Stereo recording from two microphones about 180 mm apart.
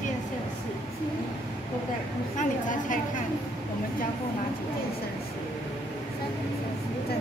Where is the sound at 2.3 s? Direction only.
45° left (ahead or behind).